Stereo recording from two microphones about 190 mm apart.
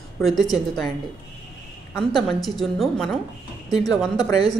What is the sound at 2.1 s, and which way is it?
A woman's voice, centre (ahead or behind).